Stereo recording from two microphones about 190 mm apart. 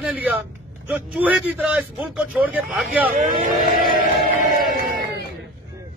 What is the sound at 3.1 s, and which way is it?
Speech, 45° right (ahead or behind).